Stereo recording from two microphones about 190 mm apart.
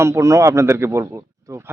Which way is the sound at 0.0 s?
15° right (ahead or behind).